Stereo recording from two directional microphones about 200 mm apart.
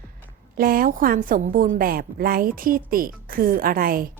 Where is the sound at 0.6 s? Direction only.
45° right (ahead or behind).